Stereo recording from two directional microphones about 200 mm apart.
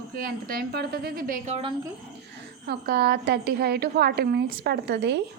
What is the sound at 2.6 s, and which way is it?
A woman's voice, 50° right (ahead or behind).